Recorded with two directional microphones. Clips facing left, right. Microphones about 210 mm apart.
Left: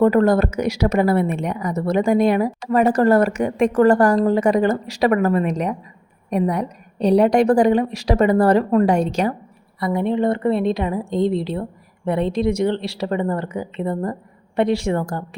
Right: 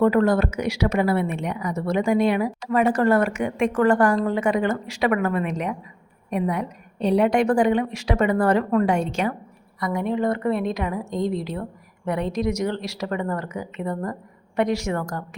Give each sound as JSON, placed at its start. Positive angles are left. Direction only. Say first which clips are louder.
{"t": 0.0, "sound": "a woman's voice", "louder": "left 3 dB", "side_deg": 45}